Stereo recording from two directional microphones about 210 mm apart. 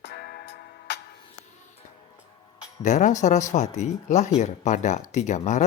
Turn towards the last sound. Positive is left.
turn(degrees=35)  # may be behind; listen again after turning